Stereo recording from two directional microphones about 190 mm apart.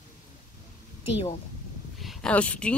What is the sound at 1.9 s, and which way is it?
Speech, centre (ahead or behind).